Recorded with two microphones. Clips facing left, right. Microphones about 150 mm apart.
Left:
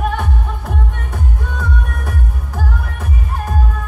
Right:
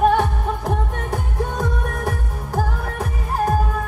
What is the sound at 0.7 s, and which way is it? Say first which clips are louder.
Music: right 3 dB; 40° right (ahead or behind).